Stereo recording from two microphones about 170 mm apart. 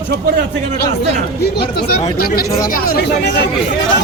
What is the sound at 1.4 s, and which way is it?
Speech, 70° left (ahead or behind).